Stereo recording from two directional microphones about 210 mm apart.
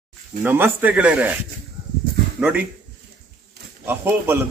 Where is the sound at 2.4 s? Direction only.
5° right (ahead or behind).